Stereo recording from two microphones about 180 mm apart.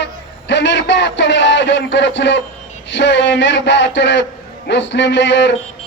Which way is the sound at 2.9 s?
80° left.